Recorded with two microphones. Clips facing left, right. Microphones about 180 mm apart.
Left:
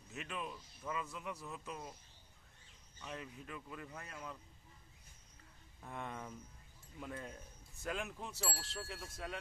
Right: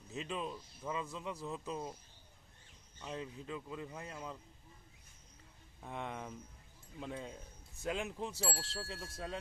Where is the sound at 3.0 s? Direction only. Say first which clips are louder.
Right 4 dB; 25° right (ahead or behind).